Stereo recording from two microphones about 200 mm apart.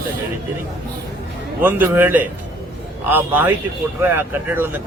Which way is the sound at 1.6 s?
10° right (ahead or behind).